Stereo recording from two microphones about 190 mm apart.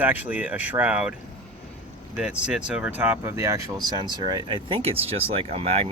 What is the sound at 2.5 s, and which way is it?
Speech, 5° right (ahead or behind).